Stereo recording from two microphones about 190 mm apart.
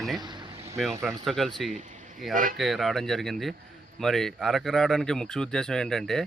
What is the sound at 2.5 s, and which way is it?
Speech, centre (ahead or behind).